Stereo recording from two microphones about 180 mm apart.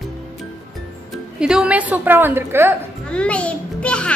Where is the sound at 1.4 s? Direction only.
5° right (ahead or behind).